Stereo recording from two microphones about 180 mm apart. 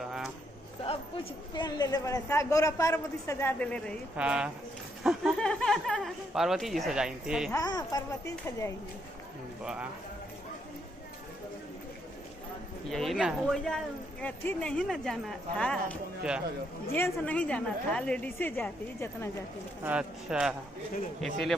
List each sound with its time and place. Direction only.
0.0 s a sound: centre (ahead or behind)
1.5 s a man's voice: 25° left (ahead or behind); by 3.9 s 5° left (ahead or behind)
4.2 s speech: 5° right (ahead or behind)
7.5 s speech: 20° left (ahead or behind)
12.9 s a man's voice: centre (ahead or behind)
19.8 s speech: 5° right (ahead or behind)